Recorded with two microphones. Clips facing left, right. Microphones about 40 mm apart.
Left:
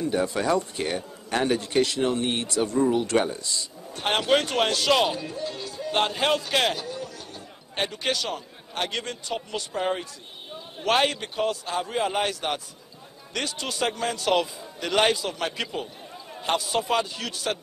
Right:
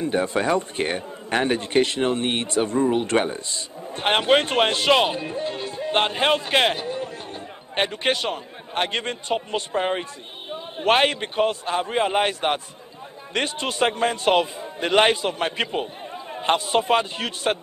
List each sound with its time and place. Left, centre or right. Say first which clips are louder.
0.0 s a man's voice: right 3 dB; right